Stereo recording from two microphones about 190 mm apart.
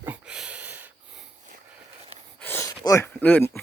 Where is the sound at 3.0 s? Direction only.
10° left (ahead or behind).